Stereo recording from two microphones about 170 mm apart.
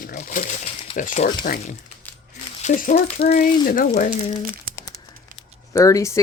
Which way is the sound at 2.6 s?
50° left (ahead or behind).